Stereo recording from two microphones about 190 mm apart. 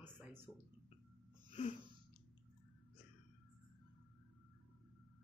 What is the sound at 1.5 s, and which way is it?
Wheeze, 30° left (ahead or behind).